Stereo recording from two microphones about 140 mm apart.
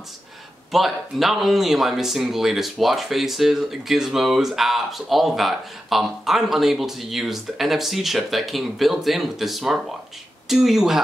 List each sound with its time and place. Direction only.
0.7 s speech: centre (ahead or behind)